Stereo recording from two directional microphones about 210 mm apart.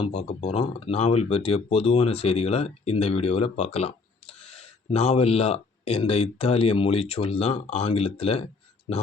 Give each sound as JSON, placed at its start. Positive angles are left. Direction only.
{"t": 0.0, "sound": "speech", "side_deg": 30}